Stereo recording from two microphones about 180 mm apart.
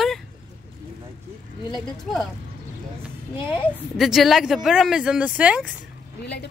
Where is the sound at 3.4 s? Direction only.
25° left (ahead or behind).